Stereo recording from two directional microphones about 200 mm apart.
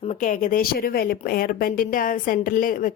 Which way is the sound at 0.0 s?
35° left (ahead or behind).